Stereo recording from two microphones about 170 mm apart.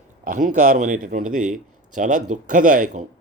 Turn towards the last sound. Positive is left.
turn(degrees=-50)  # may be behind; listen again after turning